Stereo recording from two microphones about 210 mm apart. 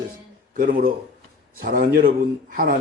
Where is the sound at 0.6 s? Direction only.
40° right (ahead or behind).